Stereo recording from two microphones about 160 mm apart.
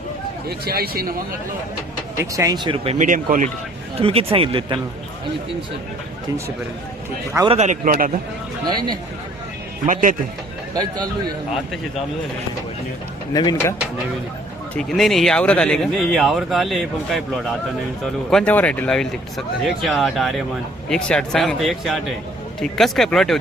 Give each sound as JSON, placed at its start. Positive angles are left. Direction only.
{"t": 0.4, "sound": "speech", "side_deg": -75}
{"t": 2.1, "sound": "speech", "side_deg": -20}
{"t": 2.7, "sound": "speech", "side_deg": -40}
{"t": 3.1, "sound": "speech", "side_deg": -55}
{"t": 3.9, "sound": "speech", "side_deg": -35}
{"t": 7.4, "sound": "speech", "side_deg": -40}
{"t": 9.8, "sound": "speech", "side_deg": -55}
{"t": 10.8, "sound": "speech", "side_deg": -25}
{"t": 13.3, "sound": "speech", "side_deg": 25}
{"t": 14.8, "sound": "speech", "side_deg": 0}